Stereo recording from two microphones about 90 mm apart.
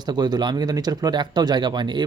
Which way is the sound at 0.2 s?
50° right (ahead or behind).